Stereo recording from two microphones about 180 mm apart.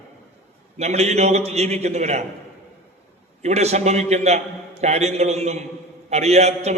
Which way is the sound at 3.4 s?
35° right (ahead or behind).